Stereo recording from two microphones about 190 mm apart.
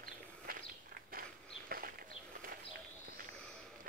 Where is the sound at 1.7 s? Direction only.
50° right (ahead or behind).